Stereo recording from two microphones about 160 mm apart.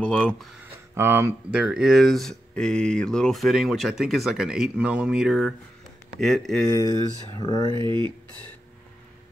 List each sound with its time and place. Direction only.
0.0 s speech: 10° left (ahead or behind)
0.9 s speech: 15° right (ahead or behind); by 6.5 s centre (ahead or behind)
6.7 s speech: 20° left (ahead or behind)
7.7 s speech: 30° right (ahead or behind)